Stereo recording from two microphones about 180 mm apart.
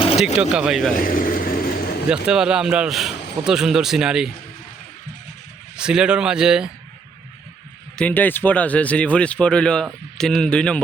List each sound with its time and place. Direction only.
0.5 s a man's voice: 5° right (ahead or behind)
0.9 s vehicle: 50° left (ahead or behind)
2.2 s a man's voice: 5° right (ahead or behind)
5.7 s a man's voice: 5° right (ahead or behind)
7.9 s speech: 10° left (ahead or behind)